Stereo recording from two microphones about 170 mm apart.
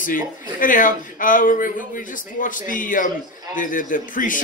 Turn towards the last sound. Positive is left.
turn(degrees=50)  # may be behind; listen again after turning